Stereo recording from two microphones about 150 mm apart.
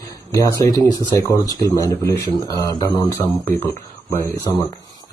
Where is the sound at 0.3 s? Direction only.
20° left (ahead or behind).